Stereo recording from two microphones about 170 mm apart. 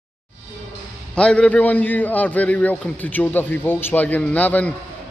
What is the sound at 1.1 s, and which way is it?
A man's voice, 5° left (ahead or behind).